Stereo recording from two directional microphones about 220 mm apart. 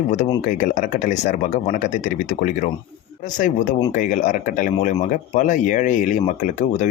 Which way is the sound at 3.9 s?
35° left (ahead or behind).